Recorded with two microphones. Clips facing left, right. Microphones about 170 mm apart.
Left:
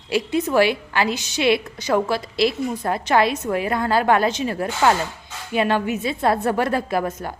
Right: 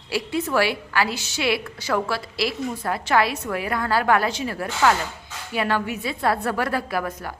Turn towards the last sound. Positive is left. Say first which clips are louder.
# left 4 dB
turn(degrees=25)  # may be behind; listen again after turning